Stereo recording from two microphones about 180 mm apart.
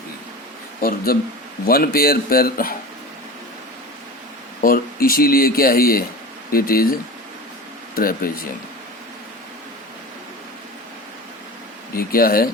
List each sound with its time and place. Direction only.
0.8 s speech: 55° left (ahead or behind)
4.6 s speech: 55° left (ahead or behind)
7.9 s speech: 55° left (ahead or behind)
11.9 s speech: 55° left (ahead or behind)